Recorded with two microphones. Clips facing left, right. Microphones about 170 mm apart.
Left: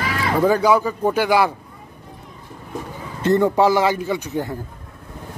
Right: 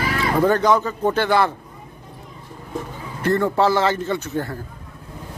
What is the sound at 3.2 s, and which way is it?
Speech, 15° left (ahead or behind).